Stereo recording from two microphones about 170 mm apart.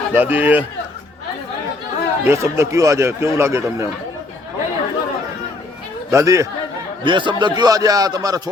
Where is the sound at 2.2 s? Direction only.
15° right (ahead or behind).